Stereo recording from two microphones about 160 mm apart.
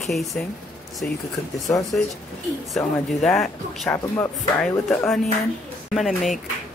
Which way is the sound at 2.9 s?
5° left (ahead or behind).